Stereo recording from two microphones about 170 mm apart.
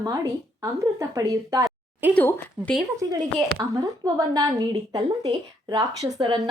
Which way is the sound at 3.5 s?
20° right (ahead or behind).